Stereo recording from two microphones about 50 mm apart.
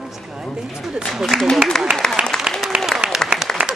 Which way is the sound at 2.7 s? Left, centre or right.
Right.